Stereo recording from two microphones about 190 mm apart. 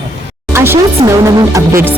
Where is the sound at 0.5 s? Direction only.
10° right (ahead or behind).